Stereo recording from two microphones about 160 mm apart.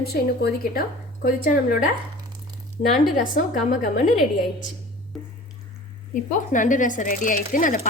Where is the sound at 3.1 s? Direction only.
55° left (ahead or behind).